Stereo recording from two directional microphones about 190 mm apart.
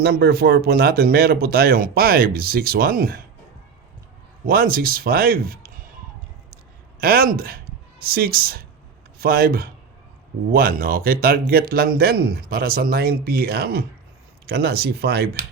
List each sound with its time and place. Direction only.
0.0 s speech: 55° right (ahead or behind)
4.4 s speech: 50° right (ahead or behind)
7.0 s speech: 50° right (ahead or behind)